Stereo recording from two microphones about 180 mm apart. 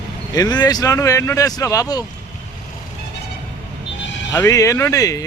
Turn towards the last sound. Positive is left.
turn(degrees=20)  # may be behind; listen again after turning